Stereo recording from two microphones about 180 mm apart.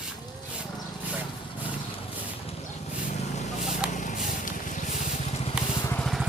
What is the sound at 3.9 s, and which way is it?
Vehicle, 45° left (ahead or behind).